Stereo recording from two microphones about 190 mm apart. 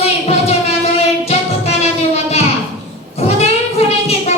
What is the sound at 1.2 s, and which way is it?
Music, 35° left (ahead or behind).